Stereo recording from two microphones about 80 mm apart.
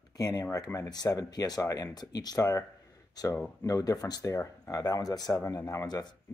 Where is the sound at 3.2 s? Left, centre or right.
Left.